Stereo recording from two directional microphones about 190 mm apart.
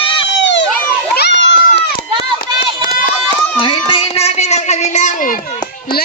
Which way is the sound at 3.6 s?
30° left (ahead or behind).